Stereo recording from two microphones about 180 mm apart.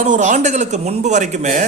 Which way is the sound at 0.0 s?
45° right (ahead or behind).